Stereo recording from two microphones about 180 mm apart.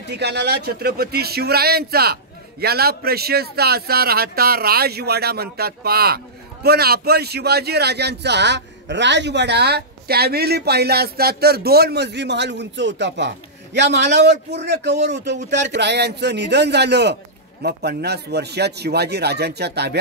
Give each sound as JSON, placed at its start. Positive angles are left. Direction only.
{"t": 0.2, "sound": "a man's voice", "side_deg": -65}